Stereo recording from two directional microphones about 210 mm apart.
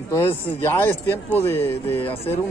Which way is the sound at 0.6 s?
10° left (ahead or behind).